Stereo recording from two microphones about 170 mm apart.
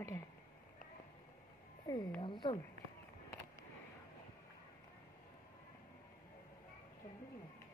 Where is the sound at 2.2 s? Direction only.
30° left (ahead or behind).